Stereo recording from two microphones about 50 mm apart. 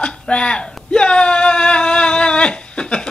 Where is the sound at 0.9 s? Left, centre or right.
Centre.